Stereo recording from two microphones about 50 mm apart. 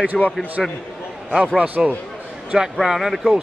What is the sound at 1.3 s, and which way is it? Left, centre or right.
Speech, right.